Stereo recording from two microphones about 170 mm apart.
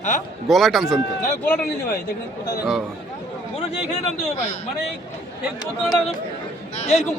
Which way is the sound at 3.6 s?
40° left (ahead or behind).